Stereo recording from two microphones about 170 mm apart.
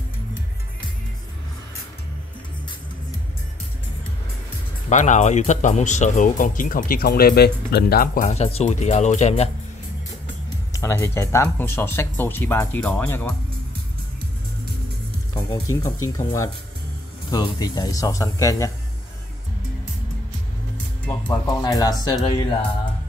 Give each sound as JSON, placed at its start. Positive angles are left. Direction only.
{"t": 4.8, "sound": "speech", "side_deg": 45}
{"t": 8.3, "sound": "speech", "side_deg": 40}
{"t": 10.7, "sound": "speech", "side_deg": 20}
{"t": 15.3, "sound": "speech", "side_deg": 20}
{"t": 21.1, "sound": "speech", "side_deg": 20}